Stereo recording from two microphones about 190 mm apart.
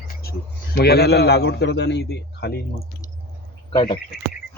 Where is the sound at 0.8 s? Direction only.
60° left (ahead or behind).